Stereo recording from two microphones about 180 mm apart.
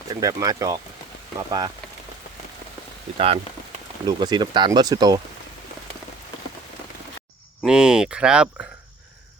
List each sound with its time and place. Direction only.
0.1 s speech: 20° right (ahead or behind)
4.0 s speech: 25° right (ahead or behind)
7.6 s speech: 5° right (ahead or behind)